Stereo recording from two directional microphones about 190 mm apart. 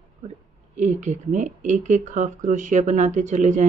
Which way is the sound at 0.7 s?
40° right (ahead or behind).